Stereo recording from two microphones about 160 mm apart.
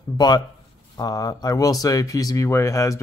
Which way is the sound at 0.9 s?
25° left (ahead or behind).